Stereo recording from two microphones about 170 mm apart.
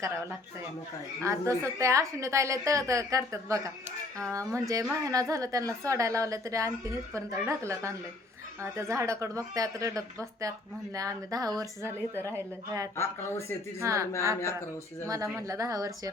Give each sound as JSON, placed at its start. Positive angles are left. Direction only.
{"t": 1.2, "sound": "a woman's voice", "side_deg": -15}
{"t": 13.7, "sound": "a woman's voice", "side_deg": -20}